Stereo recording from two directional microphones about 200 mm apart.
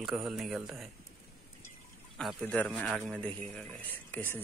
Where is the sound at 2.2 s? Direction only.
5° left (ahead or behind).